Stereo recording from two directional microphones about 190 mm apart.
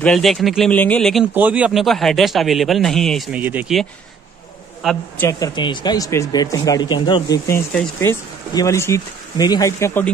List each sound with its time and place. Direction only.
0.0 s speech: centre (ahead or behind)
4.8 s speech: 10° left (ahead or behind)
5.5 s speech: 25° left (ahead or behind)